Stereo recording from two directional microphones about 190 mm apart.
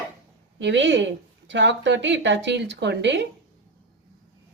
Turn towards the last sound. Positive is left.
turn(degrees=-65)  # may be behind; listen again after turning